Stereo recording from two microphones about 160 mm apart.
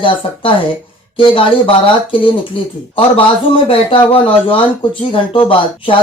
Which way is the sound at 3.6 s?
35° left (ahead or behind).